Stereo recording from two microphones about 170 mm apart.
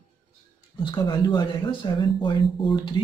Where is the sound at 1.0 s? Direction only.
25° left (ahead or behind).